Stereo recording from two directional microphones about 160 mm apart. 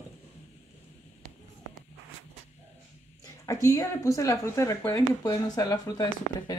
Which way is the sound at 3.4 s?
20° left (ahead or behind).